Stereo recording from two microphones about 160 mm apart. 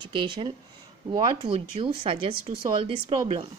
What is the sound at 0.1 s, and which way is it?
Speech, 30° right (ahead or behind).